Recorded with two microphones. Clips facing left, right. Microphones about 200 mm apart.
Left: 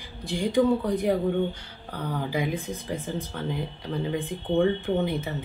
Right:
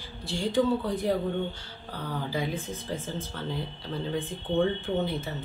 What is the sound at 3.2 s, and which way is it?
Speech, 15° left (ahead or behind).